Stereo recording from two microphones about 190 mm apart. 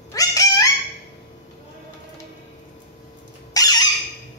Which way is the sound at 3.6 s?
20° left (ahead or behind).